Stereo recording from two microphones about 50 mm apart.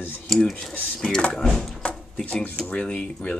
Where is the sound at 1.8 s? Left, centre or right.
Left.